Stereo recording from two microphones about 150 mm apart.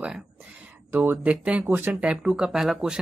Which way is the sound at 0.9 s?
15° right (ahead or behind).